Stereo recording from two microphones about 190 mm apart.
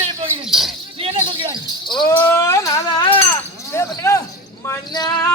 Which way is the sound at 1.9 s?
25° left (ahead or behind).